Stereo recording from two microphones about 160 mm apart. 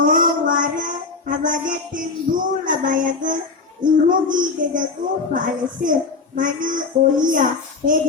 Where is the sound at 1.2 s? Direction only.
55° right (ahead or behind).